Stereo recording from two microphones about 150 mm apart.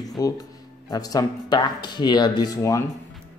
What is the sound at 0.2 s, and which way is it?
Speech, 25° left (ahead or behind).